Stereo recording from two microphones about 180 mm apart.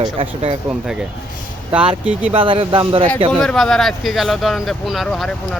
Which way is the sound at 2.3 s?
30° right (ahead or behind).